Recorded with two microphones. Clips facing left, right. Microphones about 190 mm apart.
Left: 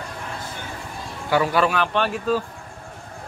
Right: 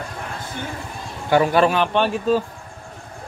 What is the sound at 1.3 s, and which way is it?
Speech, 25° right (ahead or behind).